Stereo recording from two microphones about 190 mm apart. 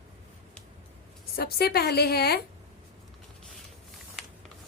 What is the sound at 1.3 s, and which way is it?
A woman's voice, 55° left (ahead or behind).